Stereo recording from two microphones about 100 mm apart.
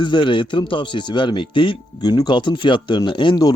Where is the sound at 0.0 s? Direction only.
55° left (ahead or behind).